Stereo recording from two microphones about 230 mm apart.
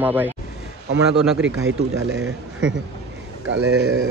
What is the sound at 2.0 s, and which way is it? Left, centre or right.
Speech, right.